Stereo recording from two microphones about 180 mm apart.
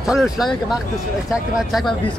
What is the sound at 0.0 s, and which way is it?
A man's voice, centre (ahead or behind).